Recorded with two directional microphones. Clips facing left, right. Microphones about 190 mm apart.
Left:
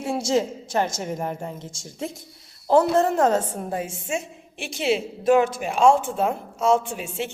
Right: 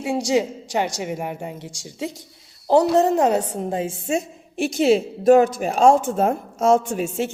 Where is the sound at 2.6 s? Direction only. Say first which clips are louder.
Right 2 dB; 20° right (ahead or behind).